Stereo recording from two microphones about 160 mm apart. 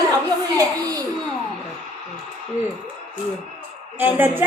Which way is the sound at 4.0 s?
10° right (ahead or behind).